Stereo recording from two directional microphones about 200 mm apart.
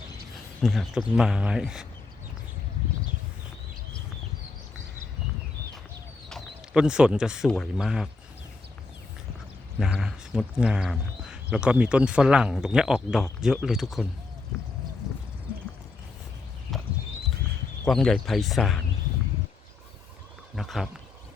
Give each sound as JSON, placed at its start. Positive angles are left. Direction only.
{"t": 0.6, "sound": "speech", "side_deg": 0}
{"t": 6.2, "sound": "bird", "side_deg": 0}
{"t": 7.4, "sound": "speech", "side_deg": 5}
{"t": 9.7, "sound": "speech", "side_deg": 0}
{"t": 17.8, "sound": "speech", "side_deg": 0}
{"t": 20.6, "sound": "speech", "side_deg": 0}